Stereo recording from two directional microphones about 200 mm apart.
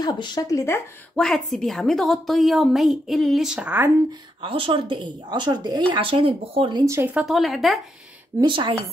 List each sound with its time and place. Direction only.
0.0 s a woman's voice: 20° left (ahead or behind); by 3.9 s 5° right (ahead or behind)
4.4 s a woman's voice: 25° right (ahead or behind)
7.2 s a woman's voice: centre (ahead or behind)
8.4 s a woman's voice: 25° right (ahead or behind)